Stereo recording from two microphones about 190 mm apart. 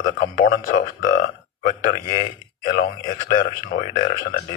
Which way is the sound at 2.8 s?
45° left (ahead or behind).